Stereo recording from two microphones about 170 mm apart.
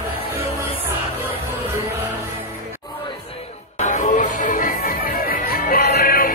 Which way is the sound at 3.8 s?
50° left (ahead or behind).